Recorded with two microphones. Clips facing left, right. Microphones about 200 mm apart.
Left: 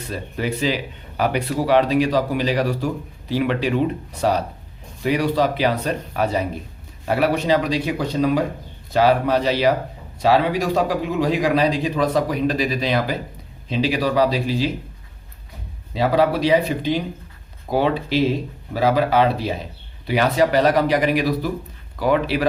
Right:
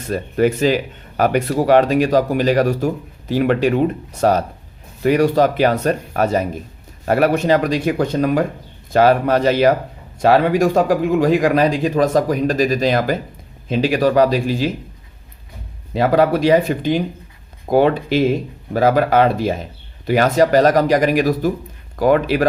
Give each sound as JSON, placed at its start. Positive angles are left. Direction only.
{"t": 0.1, "sound": "speech", "side_deg": -50}
{"t": 15.9, "sound": "speech", "side_deg": -50}